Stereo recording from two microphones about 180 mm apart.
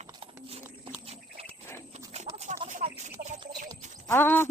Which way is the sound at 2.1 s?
40° right (ahead or behind).